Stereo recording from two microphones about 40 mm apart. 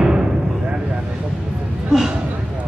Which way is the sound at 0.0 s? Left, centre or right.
Right.